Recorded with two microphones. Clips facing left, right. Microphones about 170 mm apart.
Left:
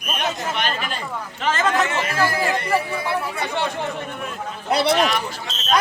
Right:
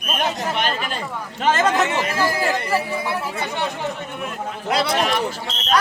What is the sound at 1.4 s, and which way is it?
Speech, 40° right (ahead or behind).